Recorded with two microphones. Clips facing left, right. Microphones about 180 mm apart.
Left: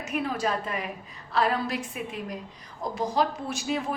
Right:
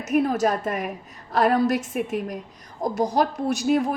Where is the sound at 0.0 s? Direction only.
45° right (ahead or behind).